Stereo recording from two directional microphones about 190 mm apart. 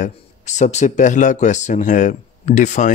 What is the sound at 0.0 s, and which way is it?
Speech, 40° left (ahead or behind).